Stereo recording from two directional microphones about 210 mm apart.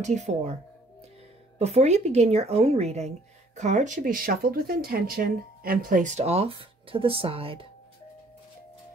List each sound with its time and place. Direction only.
0.0 s speech: 35° right (ahead or behind)
1.6 s speech: 30° right (ahead or behind)